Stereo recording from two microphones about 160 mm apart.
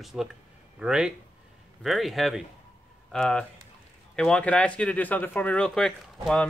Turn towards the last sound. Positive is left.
turn(degrees=5)  # may be behind; listen again after turning